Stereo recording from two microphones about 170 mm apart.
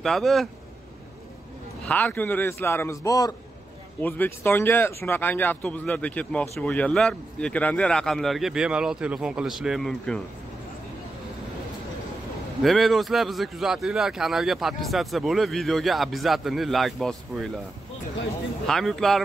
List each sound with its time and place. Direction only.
0.0 s speech: centre (ahead or behind)
1.9 s speech: 10° left (ahead or behind)
4.0 s speech: 10° left (ahead or behind)
12.6 s speech: centre (ahead or behind)
18.7 s speech: centre (ahead or behind)